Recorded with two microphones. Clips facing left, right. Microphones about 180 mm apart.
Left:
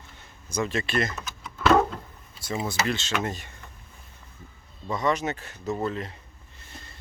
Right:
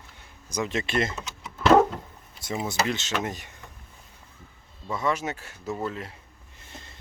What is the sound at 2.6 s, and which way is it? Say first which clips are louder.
Speech: right 1 dB; 20° right (ahead or behind).